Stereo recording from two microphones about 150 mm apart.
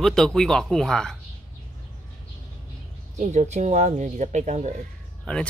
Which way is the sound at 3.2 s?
50° right (ahead or behind).